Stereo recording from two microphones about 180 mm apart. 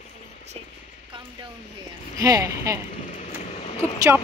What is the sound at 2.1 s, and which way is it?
Speech, 20° right (ahead or behind).